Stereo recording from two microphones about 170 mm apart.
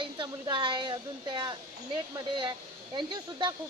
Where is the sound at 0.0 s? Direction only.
30° right (ahead or behind).